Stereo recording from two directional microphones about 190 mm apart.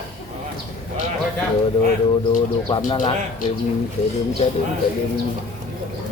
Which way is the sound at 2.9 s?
25° left (ahead or behind).